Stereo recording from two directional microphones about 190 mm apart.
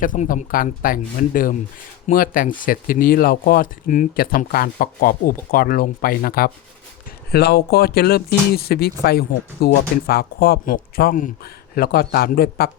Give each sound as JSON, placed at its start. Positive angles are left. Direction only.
{"t": 0.0, "sound": "speech", "side_deg": 45}